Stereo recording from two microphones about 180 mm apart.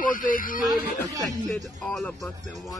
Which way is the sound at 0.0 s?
50° left (ahead or behind).